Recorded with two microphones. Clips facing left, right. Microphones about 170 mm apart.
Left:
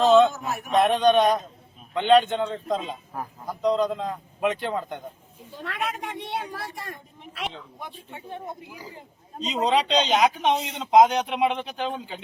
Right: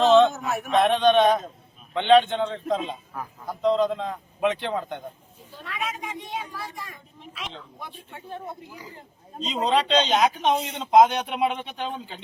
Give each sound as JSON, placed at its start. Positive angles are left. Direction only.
{"t": 0.0, "sound": "a man's voice", "side_deg": 0}
{"t": 3.6, "sound": "a man's voice", "side_deg": 0}
{"t": 5.6, "sound": "a woman's voice", "side_deg": 65}
{"t": 8.1, "sound": "a man's voice", "side_deg": 15}
{"t": 11.1, "sound": "a man's voice", "side_deg": 0}
{"t": 11.8, "sound": "speech", "side_deg": 10}